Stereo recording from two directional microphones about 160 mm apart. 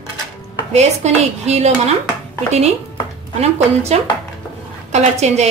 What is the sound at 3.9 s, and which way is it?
Speech, 45° right (ahead or behind).